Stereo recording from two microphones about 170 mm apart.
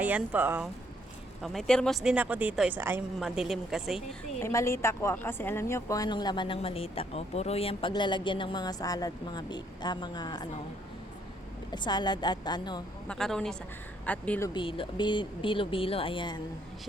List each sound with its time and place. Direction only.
0.0 s speech: 10° right (ahead or behind)
1.4 s speech: centre (ahead or behind)
4.4 s a woman's voice: 15° left (ahead or behind)
11.7 s a woman's voice: 25° left (ahead or behind)
13.1 s speech: 5° left (ahead or behind)
14.5 s speech: 30° left (ahead or behind)